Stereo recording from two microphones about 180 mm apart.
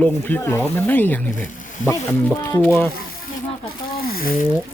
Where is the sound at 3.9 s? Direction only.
55° left (ahead or behind).